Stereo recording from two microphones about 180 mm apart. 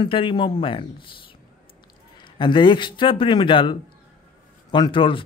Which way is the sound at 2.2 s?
25° left (ahead or behind).